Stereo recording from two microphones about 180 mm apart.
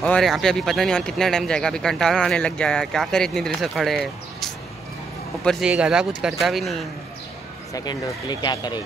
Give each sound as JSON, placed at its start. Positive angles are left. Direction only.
{"t": 0.0, "sound": "speech", "side_deg": 5}
{"t": 5.4, "sound": "speech", "side_deg": 0}
{"t": 7.7, "sound": "speech", "side_deg": 25}